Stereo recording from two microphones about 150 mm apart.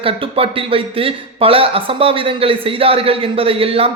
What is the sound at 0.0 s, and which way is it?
Speech, 40° right (ahead or behind).